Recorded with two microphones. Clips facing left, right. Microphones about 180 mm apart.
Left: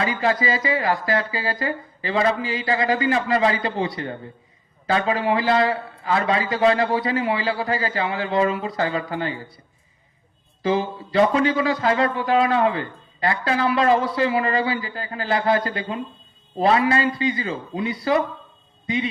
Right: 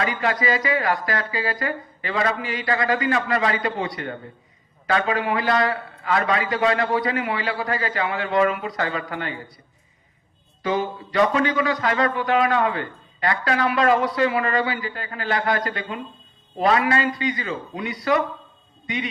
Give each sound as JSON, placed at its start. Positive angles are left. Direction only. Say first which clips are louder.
{"t": 0.0, "sound": "a man's voice", "louder": "left 1 dB", "side_deg": 30}
{"t": 10.6, "sound": "a man's voice", "louder": "left 2 dB", "side_deg": 25}